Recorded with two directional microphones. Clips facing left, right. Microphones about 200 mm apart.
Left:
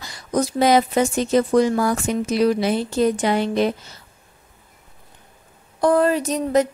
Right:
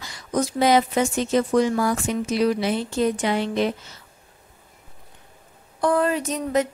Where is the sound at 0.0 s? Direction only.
35° left (ahead or behind).